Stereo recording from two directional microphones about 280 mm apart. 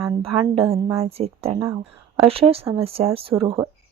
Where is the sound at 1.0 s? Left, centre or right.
Right.